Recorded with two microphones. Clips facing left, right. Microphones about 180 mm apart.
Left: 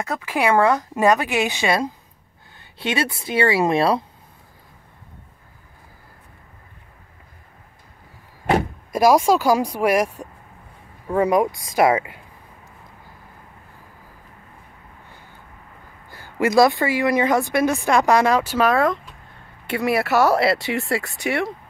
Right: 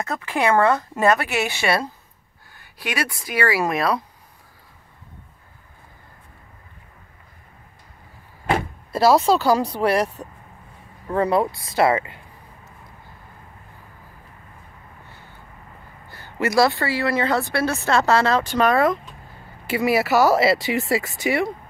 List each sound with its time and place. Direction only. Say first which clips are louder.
0.0 s speech: even; 10° left (ahead or behind); by 4.0 s 30° left (ahead or behind)
8.9 s speech: left 1 dB; 15° left (ahead or behind)
16.1 s speech: left 3 dB; 15° left (ahead or behind)